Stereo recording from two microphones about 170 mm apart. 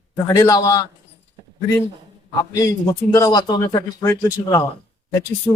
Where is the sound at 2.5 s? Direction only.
20° left (ahead or behind).